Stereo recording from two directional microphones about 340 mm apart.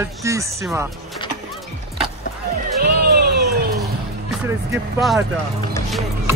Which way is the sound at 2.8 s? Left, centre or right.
Right.